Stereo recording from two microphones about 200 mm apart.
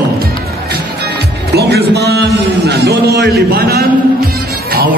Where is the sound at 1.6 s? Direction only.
55° right (ahead or behind).